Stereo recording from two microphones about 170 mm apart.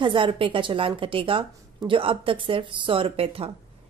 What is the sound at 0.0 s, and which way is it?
A woman's voice, 30° right (ahead or behind).